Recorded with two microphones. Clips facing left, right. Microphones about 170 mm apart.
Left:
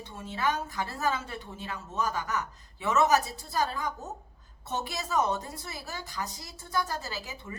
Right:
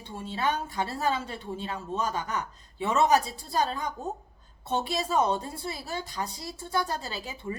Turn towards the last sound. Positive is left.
turn(degrees=-30)  # may be behind; listen again after turning